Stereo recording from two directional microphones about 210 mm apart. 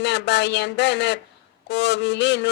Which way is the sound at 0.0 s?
55° left (ahead or behind).